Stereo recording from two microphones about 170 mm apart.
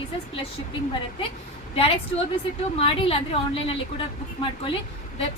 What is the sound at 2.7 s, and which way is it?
A woman's voice, 35° left (ahead or behind).